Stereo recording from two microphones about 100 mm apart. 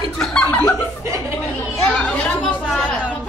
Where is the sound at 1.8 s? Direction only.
10° left (ahead or behind).